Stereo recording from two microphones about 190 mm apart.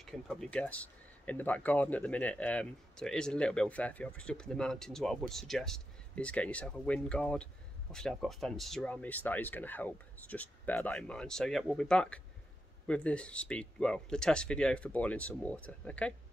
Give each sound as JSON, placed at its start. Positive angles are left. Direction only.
{"t": 0.0, "sound": "speech", "side_deg": 0}